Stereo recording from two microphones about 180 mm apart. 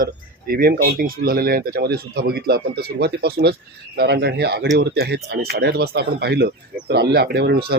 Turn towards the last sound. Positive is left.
turn(degrees=-60)  # may be behind; listen again after turning